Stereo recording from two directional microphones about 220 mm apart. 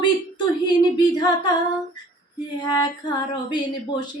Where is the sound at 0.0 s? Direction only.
20° left (ahead or behind).